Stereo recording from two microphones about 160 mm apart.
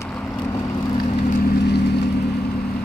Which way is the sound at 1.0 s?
55° left (ahead or behind).